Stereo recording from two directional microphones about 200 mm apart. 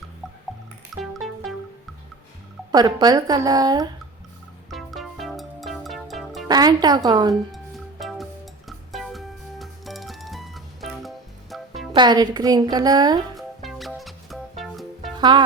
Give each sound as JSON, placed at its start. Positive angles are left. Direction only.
{"t": 0.9, "sound": "music", "side_deg": 0}
{"t": 2.7, "sound": "a woman's voice", "side_deg": -20}
{"t": 4.7, "sound": "music", "side_deg": 0}
{"t": 6.5, "sound": "a woman's voice", "side_deg": -20}
{"t": 7.5, "sound": "music", "side_deg": 0}
{"t": 11.9, "sound": "a woman's voice", "side_deg": -20}
{"t": 13.3, "sound": "music", "side_deg": 0}
{"t": 15.1, "sound": "music", "side_deg": -20}